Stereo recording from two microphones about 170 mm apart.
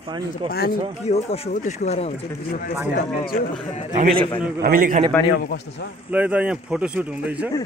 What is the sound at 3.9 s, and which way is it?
A man's voice, 50° right (ahead or behind).